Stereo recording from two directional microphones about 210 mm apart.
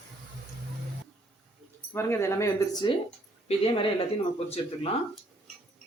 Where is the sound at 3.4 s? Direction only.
25° left (ahead or behind).